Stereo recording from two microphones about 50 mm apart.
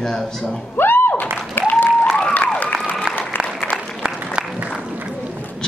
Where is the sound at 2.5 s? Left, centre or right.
Left.